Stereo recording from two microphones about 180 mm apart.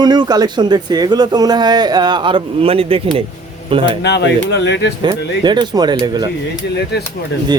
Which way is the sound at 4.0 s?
70° left (ahead or behind).